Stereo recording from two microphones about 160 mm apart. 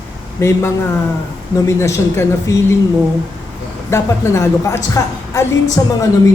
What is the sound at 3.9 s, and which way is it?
A woman's voice, 15° left (ahead or behind).